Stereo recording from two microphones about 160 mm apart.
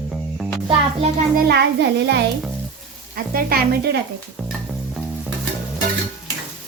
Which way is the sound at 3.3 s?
70° right (ahead or behind).